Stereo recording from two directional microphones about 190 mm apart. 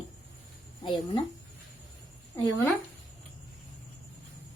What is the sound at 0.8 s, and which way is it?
Speech, 25° left (ahead or behind).